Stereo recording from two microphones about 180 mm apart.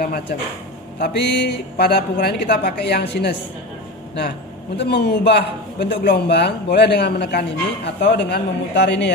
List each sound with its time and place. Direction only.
0.0 s a man's voice: 60° left (ahead or behind)
4.7 s a man's voice: 70° left (ahead or behind)